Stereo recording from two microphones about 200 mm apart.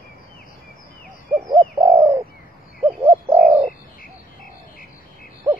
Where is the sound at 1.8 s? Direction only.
15° right (ahead or behind).